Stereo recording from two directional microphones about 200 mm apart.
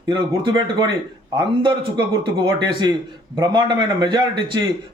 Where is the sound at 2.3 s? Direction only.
20° right (ahead or behind).